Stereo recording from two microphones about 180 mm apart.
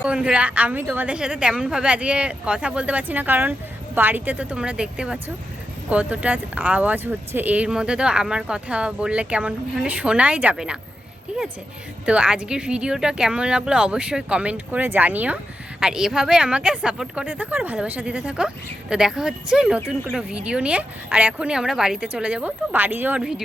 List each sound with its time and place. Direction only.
0.0 s speech: 5° right (ahead or behind)